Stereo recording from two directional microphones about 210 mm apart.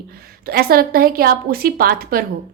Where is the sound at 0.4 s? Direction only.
45° right (ahead or behind).